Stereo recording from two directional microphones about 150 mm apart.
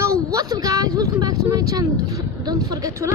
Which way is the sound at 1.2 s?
20° right (ahead or behind).